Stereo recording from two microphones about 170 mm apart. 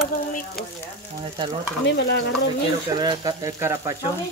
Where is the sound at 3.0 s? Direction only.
25° right (ahead or behind).